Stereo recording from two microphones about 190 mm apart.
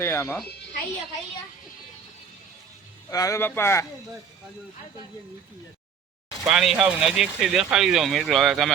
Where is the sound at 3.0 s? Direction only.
15° left (ahead or behind).